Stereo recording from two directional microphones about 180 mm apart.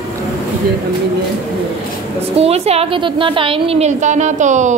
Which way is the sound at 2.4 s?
35° right (ahead or behind).